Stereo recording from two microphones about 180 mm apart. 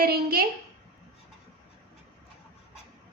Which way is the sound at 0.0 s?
55° right (ahead or behind).